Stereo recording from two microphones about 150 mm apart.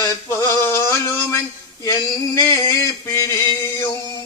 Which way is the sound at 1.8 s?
20° left (ahead or behind).